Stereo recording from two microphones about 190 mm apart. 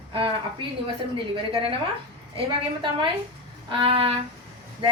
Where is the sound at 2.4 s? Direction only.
25° right (ahead or behind).